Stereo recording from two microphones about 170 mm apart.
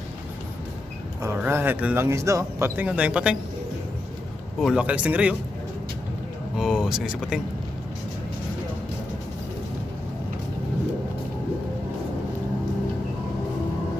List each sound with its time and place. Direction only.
1.2 s speech: 15° right (ahead or behind)
4.6 s speech: 5° right (ahead or behind)
6.5 s speech: 5° right (ahead or behind)